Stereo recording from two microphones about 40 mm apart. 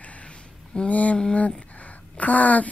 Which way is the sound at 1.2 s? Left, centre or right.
Left.